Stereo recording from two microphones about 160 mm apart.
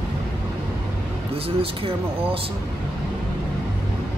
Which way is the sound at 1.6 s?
35° right (ahead or behind).